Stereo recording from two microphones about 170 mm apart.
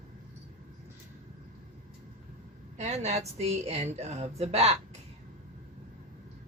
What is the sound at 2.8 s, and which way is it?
A woman's voice, 40° right (ahead or behind).